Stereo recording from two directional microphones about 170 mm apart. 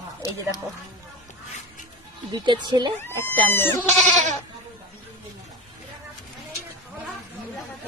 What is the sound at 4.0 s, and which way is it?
Goat, 45° right (ahead or behind).